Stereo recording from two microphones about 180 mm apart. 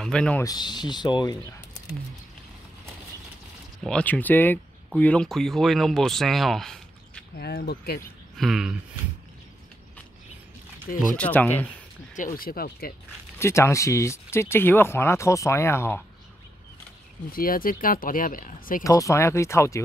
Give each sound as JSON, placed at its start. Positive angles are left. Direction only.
{"t": 0.0, "sound": "speech", "side_deg": 5}
{"t": 0.4, "sound": "speech", "side_deg": 20}
{"t": 3.8, "sound": "speech", "side_deg": 5}
{"t": 7.3, "sound": "speech", "side_deg": 65}
{"t": 8.4, "sound": "speech", "side_deg": 0}
{"t": 11.1, "sound": "speech", "side_deg": 10}
{"t": 12.4, "sound": "speech", "side_deg": 55}
{"t": 13.4, "sound": "speech", "side_deg": 15}
{"t": 17.3, "sound": "speech", "side_deg": 55}
{"t": 18.9, "sound": "speech", "side_deg": 15}